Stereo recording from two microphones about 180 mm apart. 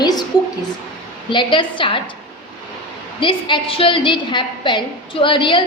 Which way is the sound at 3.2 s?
25° left (ahead or behind).